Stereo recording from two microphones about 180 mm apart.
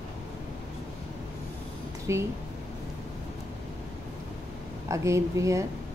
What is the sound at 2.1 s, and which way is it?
Speech, 15° right (ahead or behind).